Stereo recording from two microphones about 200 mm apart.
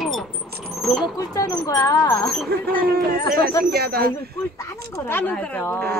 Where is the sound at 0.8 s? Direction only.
Centre (ahead or behind).